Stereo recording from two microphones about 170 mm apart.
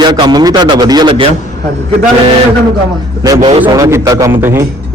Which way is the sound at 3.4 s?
35° right (ahead or behind).